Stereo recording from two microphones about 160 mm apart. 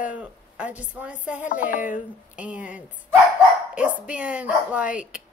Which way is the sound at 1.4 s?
55° left (ahead or behind).